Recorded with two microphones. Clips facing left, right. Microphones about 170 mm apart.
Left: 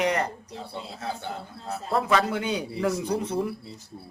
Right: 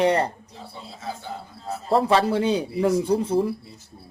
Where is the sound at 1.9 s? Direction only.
30° right (ahead or behind).